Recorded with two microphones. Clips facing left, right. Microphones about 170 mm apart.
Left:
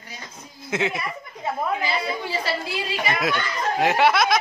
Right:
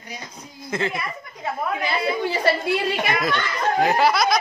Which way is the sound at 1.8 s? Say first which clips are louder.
Right 3 dB; 55° right (ahead or behind).